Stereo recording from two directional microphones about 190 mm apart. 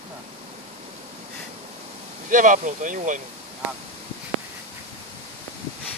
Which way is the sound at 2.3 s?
45° right (ahead or behind).